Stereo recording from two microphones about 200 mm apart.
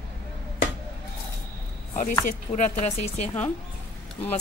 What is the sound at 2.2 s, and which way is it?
Speech, 35° left (ahead or behind).